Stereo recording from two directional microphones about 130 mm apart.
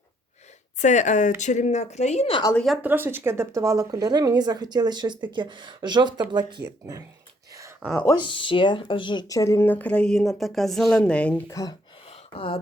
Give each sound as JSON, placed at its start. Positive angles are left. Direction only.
{"t": 0.8, "sound": "speech", "side_deg": 70}
{"t": 2.8, "sound": "speech", "side_deg": -15}
{"t": 8.1, "sound": "speech", "side_deg": 40}
{"t": 12.0, "sound": "a sound", "side_deg": 50}